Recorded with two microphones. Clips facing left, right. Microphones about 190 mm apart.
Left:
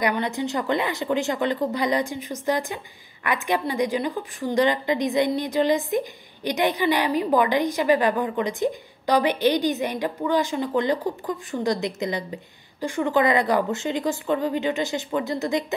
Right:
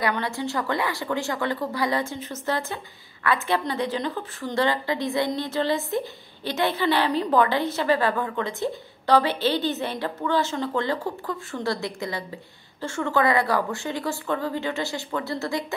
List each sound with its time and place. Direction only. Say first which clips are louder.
0.0 s a woman's voice: left 2 dB; 20° left (ahead or behind)